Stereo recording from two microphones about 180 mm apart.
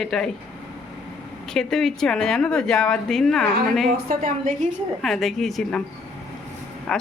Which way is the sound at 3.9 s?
55° right (ahead or behind).